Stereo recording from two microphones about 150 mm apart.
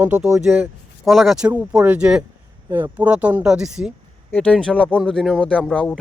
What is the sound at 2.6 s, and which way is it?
Speech, 20° right (ahead or behind).